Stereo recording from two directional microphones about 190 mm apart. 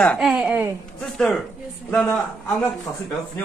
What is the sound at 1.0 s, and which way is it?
A woman's voice, 5° left (ahead or behind).